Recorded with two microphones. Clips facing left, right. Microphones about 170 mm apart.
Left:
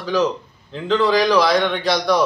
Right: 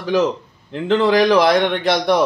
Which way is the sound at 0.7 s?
55° right (ahead or behind).